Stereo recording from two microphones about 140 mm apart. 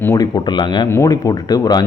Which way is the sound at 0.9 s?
25° left (ahead or behind).